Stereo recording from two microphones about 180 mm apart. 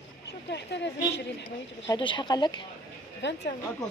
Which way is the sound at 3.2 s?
75° left (ahead or behind).